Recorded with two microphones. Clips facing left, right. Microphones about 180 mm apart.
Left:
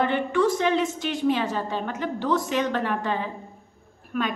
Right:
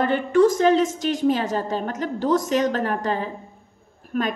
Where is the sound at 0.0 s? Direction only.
45° right (ahead or behind).